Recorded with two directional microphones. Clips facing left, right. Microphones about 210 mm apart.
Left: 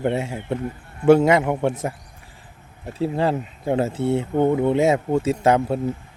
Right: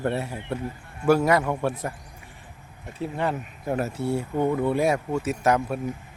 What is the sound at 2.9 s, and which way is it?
Speech, 30° left (ahead or behind).